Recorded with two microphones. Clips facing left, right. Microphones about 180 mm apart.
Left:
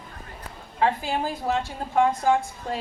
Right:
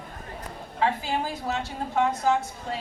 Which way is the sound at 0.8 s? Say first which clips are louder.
Left 2 dB; 50° left (ahead or behind).